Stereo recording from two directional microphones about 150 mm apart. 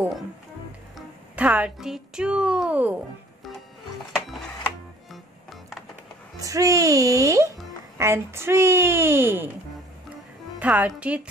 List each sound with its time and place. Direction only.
0.9 s speech: 10° right (ahead or behind)
5.1 s music: centre (ahead or behind)
6.4 s a child's voice: 20° right (ahead or behind)
10.6 s a woman's voice: 10° right (ahead or behind)